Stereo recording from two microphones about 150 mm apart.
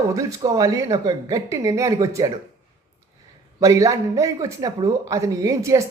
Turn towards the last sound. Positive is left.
turn(degrees=-20)  # may be behind; listen again after turning